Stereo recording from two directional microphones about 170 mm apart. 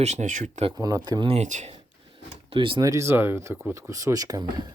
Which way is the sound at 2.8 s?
20° right (ahead or behind).